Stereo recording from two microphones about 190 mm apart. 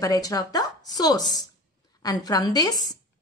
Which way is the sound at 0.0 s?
20° left (ahead or behind).